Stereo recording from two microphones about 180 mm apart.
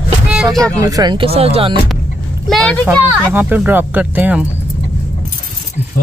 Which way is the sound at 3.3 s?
10° right (ahead or behind).